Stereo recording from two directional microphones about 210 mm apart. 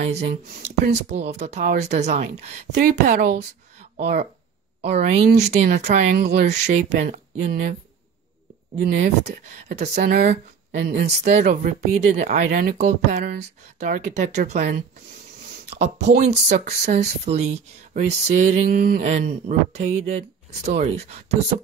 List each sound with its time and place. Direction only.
0.0 s speech: 35° right (ahead or behind)
2.8 s speech: 40° right (ahead or behind)
9.2 s speech: 35° right (ahead or behind)
11.1 s speech: 35° right (ahead or behind)
15.6 s speech: 30° right (ahead or behind)
19.0 s speech: 35° right (ahead or behind)